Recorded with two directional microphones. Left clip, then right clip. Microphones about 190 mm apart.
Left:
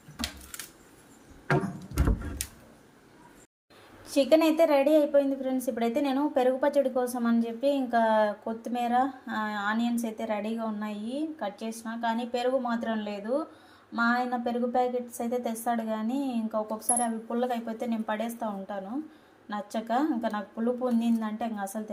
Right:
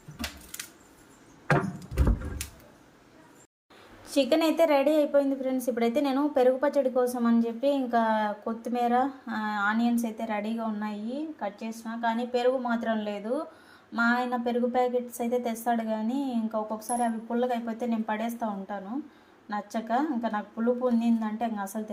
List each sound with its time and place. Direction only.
4.0 s a woman's voice: centre (ahead or behind)